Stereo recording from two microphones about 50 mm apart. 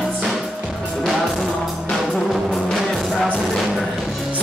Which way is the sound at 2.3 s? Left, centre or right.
Centre.